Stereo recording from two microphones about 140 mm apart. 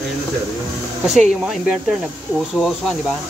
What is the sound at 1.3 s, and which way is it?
Speech, 5° right (ahead or behind).